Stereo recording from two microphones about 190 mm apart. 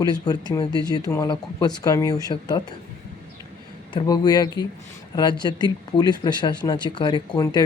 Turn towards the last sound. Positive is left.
turn(degrees=20)  # may be behind; listen again after turning